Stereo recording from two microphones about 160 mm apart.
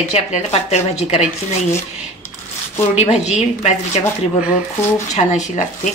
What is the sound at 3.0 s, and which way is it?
Speech, 40° left (ahead or behind).